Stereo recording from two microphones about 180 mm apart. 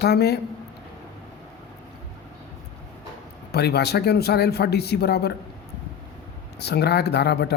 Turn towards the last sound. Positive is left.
turn(degrees=65)  # may be behind; listen again after turning